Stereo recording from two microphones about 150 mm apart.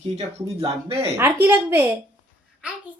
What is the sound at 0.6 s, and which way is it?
Speech, 40° right (ahead or behind).